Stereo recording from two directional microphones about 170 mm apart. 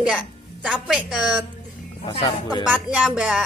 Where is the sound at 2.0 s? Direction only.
35° left (ahead or behind).